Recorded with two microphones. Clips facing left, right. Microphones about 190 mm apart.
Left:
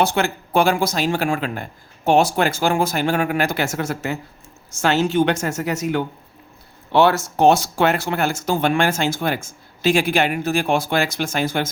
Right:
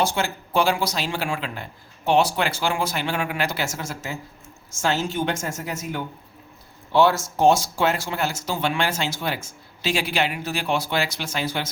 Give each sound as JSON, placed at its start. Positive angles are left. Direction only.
{"t": 0.0, "sound": "speech", "side_deg": 60}